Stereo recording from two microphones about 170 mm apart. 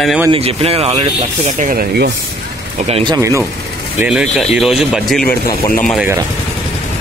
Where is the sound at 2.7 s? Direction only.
35° right (ahead or behind).